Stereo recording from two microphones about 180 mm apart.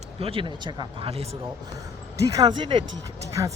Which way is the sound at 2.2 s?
20° right (ahead or behind).